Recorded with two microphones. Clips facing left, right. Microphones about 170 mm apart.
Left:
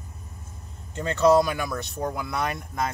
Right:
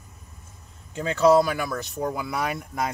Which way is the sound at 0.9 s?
5° right (ahead or behind).